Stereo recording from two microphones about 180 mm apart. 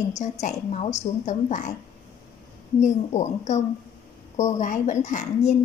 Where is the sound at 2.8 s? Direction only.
40° left (ahead or behind).